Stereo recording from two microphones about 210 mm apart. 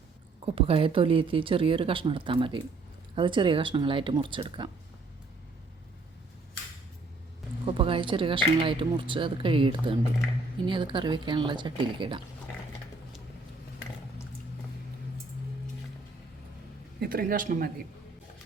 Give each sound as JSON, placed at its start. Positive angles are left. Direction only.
{"t": 0.4, "sound": "speech", "side_deg": -25}
{"t": 7.7, "sound": "speech", "side_deg": -25}
{"t": 17.0, "sound": "speech", "side_deg": -45}